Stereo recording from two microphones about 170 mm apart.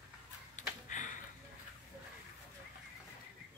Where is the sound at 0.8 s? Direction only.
50° left (ahead or behind).